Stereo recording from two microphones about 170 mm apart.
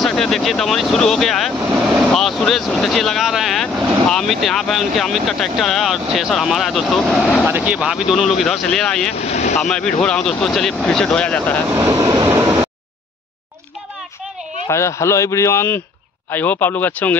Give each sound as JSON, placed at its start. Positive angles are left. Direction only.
{"t": 0.0, "sound": "speech", "side_deg": 0}
{"t": 7.4, "sound": "speech", "side_deg": -10}
{"t": 9.1, "sound": "speech", "side_deg": 40}
{"t": 9.6, "sound": "speech", "side_deg": 5}
{"t": 11.7, "sound": "vehicle", "side_deg": -15}
{"t": 14.7, "sound": "a man's voice", "side_deg": 15}